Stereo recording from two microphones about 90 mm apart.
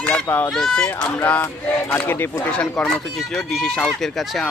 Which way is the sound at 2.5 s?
10° left (ahead or behind).